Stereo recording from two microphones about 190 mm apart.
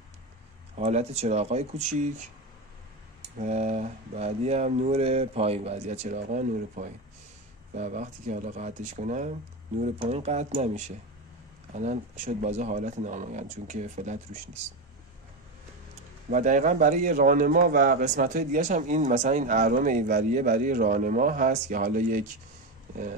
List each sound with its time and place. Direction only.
0.7 s speech: 35° right (ahead or behind)
3.3 s speech: 40° right (ahead or behind)
16.3 s speech: 40° right (ahead or behind)